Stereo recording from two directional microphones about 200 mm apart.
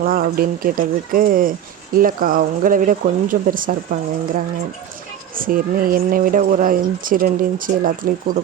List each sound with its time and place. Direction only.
0.0 s speech: 45° right (ahead or behind)
5.3 s speech: 45° right (ahead or behind)